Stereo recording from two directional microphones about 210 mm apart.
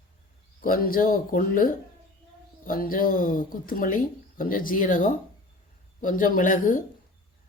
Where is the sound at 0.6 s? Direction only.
40° left (ahead or behind).